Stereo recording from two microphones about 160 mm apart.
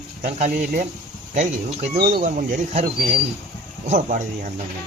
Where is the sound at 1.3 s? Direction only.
50° right (ahead or behind).